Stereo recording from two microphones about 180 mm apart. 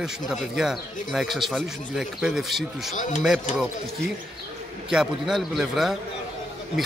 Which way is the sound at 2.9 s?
45° left (ahead or behind).